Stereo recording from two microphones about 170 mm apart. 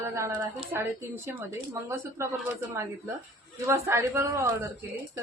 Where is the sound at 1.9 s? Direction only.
15° right (ahead or behind).